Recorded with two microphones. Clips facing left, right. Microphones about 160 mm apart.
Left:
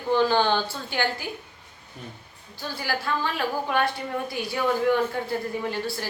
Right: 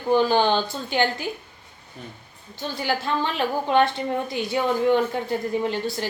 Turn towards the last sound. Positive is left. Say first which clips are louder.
# right 4 dB
turn(degrees=-20)  # may be behind; listen again after turning